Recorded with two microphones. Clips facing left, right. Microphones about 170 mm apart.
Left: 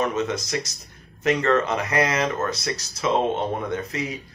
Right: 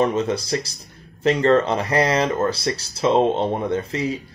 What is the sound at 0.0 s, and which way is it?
Speech, 30° right (ahead or behind).